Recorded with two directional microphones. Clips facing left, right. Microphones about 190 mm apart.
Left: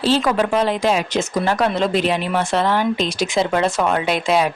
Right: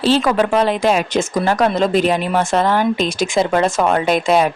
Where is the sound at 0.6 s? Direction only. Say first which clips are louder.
Right 3 dB; 60° right (ahead or behind).